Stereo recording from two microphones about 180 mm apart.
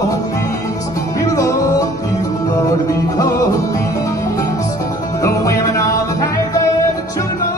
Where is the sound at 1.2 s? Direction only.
20° left (ahead or behind).